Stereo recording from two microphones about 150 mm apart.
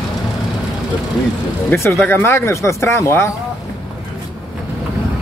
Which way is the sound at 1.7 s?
15° left (ahead or behind).